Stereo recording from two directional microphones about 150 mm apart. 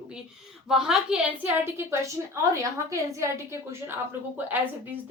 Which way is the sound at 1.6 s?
20° right (ahead or behind).